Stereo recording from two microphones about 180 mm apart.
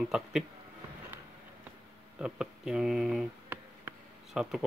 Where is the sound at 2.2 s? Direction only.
5° right (ahead or behind).